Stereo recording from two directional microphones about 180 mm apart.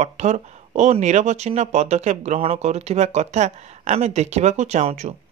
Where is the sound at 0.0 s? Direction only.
40° right (ahead or behind).